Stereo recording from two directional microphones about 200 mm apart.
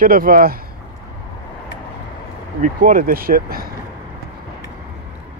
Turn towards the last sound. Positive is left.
turn(degrees=-45)  # may be behind; listen again after turning